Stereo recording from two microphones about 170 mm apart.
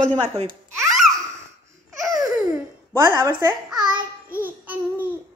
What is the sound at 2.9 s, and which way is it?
A child's voice, 20° right (ahead or behind).